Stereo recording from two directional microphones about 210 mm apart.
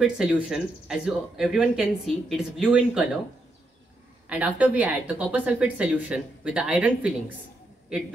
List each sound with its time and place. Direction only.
0.0 s speech: 5° right (ahead or behind)
4.3 s speech: 5° right (ahead or behind)